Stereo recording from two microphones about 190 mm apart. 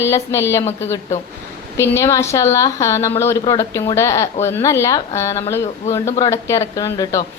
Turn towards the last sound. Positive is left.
turn(degrees=20)  # may be behind; listen again after turning